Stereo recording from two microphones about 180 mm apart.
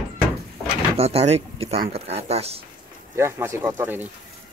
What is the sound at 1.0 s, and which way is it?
Speech, 35° right (ahead or behind).